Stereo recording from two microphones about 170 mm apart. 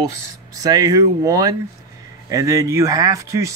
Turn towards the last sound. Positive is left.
turn(degrees=-20)  # may be behind; listen again after turning